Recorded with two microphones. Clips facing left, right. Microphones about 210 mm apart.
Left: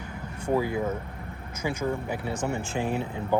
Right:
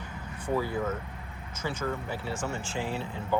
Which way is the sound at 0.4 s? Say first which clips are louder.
Left 3 dB; 15° left (ahead or behind).